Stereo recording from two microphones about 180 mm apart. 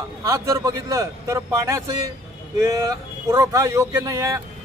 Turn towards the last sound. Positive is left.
turn(degrees=-15)  # may be behind; listen again after turning